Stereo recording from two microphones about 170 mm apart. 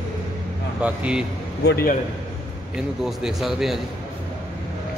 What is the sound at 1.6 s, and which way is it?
Speech, 75° left (ahead or behind).